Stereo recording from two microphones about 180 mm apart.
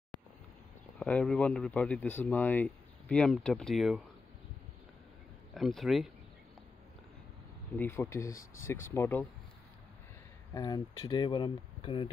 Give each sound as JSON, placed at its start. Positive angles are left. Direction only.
{"t": 0.9, "sound": "speech", "side_deg": 5}
{"t": 5.5, "sound": "speech", "side_deg": 0}
{"t": 7.7, "sound": "speech", "side_deg": 10}
{"t": 10.5, "sound": "speech", "side_deg": 25}